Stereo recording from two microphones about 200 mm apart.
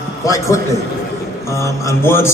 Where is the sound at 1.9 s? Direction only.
10° left (ahead or behind).